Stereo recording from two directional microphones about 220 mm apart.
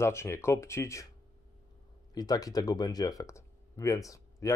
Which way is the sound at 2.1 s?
15° left (ahead or behind).